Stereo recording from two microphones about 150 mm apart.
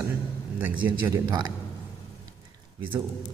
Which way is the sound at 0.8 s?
30° right (ahead or behind).